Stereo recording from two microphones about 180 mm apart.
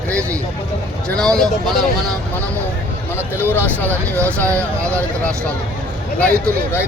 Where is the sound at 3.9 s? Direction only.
15° right (ahead or behind).